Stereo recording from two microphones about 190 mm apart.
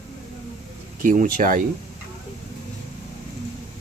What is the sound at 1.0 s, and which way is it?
Speech, 45° right (ahead or behind).